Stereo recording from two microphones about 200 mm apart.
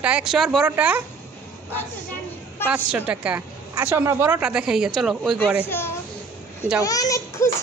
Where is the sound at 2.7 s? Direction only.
5° right (ahead or behind).